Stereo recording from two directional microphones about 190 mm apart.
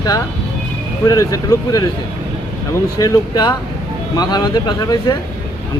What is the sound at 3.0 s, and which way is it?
Speech, 20° left (ahead or behind).